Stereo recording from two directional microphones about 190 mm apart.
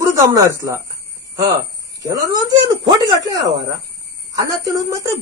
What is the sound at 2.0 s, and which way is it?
A man's voice, 20° right (ahead or behind).